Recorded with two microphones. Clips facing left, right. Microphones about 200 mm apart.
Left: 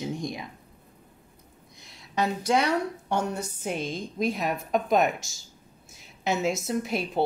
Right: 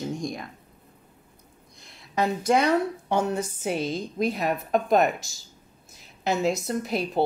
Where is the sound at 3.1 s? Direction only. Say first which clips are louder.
Right 4 dB; 5° right (ahead or behind).